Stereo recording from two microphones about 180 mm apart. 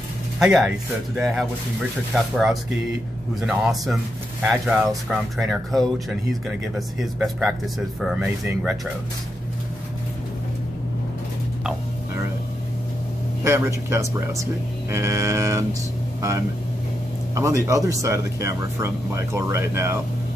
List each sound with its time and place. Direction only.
0.4 s speech: 5° right (ahead or behind)
13.4 s speech: 15° right (ahead or behind)